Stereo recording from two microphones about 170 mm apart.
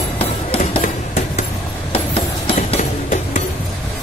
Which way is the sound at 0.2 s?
35° left (ahead or behind).